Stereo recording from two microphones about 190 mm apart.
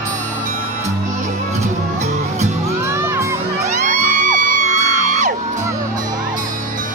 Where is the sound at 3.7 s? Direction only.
40° right (ahead or behind).